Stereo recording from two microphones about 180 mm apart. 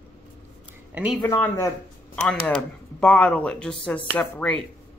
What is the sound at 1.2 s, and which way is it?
Speech, 20° left (ahead or behind).